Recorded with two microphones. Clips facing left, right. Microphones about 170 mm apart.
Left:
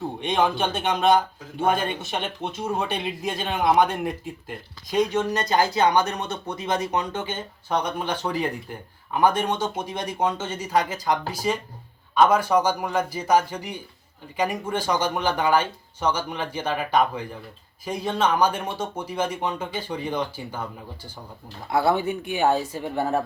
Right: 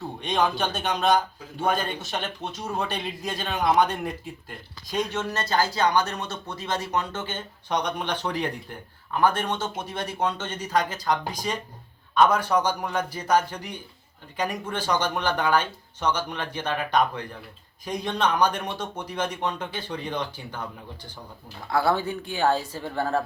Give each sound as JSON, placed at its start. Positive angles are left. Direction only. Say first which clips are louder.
{"t": 0.6, "sound": "speech", "louder": "left 3 dB", "side_deg": 20}
{"t": 4.0, "sound": "speech", "louder": "left 3 dB", "side_deg": 5}
{"t": 21.7, "sound": "speech", "louder": "left 2 dB", "side_deg": 20}